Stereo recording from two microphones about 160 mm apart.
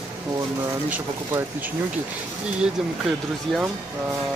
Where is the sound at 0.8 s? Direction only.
10° right (ahead or behind).